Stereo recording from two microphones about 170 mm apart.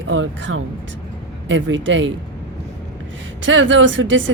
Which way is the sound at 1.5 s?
90° right.